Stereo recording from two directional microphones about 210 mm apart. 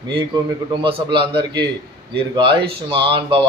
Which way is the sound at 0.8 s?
25° right (ahead or behind).